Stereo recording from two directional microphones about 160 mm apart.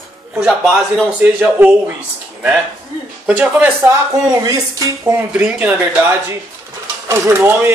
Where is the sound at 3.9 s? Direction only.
20° right (ahead or behind).